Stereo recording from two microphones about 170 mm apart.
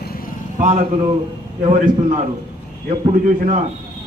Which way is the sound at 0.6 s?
45° right (ahead or behind).